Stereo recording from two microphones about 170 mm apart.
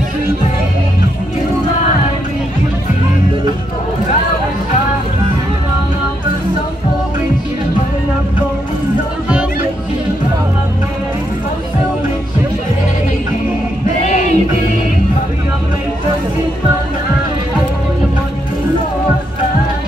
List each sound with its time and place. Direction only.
14.0 s music: 40° left (ahead or behind)